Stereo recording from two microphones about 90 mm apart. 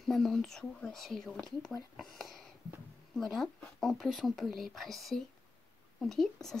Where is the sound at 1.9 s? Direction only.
Centre (ahead or behind).